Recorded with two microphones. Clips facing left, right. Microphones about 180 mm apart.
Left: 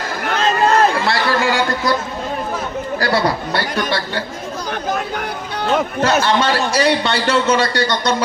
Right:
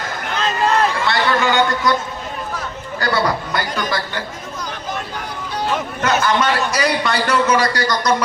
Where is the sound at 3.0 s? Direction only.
30° left (ahead or behind).